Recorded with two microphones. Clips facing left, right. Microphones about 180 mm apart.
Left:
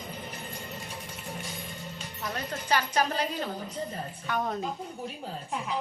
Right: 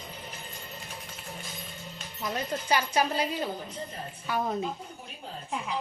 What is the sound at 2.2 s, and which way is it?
A woman's voice, 15° right (ahead or behind).